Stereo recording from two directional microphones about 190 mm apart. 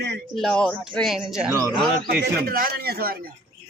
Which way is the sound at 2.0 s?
55° right (ahead or behind).